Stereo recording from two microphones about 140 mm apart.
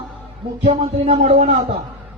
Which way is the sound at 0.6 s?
50° right (ahead or behind).